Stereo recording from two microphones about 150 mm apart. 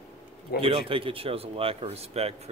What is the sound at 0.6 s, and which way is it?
Speech, 40° right (ahead or behind).